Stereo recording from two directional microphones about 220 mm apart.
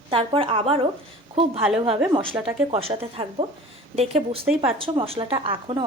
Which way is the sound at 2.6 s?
25° right (ahead or behind).